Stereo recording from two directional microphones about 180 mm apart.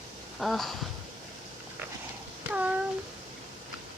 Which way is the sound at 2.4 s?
10° right (ahead or behind).